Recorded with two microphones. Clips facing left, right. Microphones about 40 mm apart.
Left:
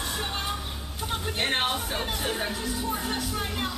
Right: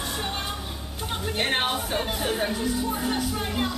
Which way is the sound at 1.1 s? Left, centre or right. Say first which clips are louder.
Right 2 dB; centre.